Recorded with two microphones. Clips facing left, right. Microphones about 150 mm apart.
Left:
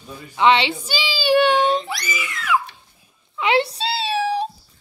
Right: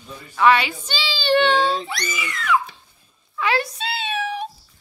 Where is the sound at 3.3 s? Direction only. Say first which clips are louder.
Left 4 dB; 25° left (ahead or behind).